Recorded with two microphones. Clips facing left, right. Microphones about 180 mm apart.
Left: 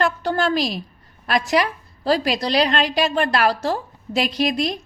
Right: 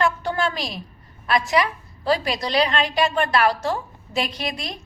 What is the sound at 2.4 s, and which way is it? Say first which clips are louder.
A woman's voice: left 2 dB; 35° left (ahead or behind).